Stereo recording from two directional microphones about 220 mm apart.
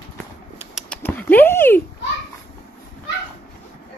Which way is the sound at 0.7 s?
5° left (ahead or behind).